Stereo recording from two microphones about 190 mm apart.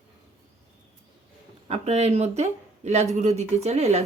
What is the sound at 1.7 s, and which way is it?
Speech, 35° right (ahead or behind).